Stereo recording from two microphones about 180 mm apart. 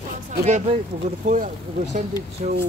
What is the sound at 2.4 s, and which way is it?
Speech, 45° right (ahead or behind).